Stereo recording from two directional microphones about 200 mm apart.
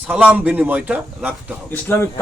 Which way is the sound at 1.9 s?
10° left (ahead or behind).